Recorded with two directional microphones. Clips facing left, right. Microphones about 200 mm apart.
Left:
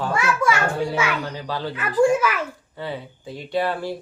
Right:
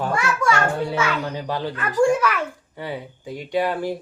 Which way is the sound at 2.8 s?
15° right (ahead or behind).